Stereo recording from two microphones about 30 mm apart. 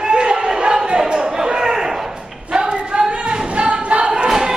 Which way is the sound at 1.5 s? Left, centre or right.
Right.